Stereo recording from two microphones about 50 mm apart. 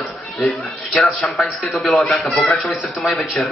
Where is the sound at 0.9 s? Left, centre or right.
Centre.